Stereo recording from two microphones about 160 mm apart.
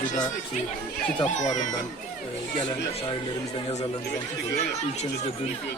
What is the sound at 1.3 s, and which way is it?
Speech, 50° left (ahead or behind).